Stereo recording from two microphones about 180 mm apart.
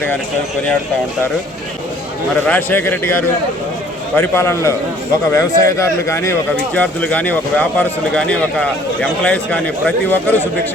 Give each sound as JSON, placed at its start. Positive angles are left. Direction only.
{"t": 2.5, "sound": "a man's voice", "side_deg": 10}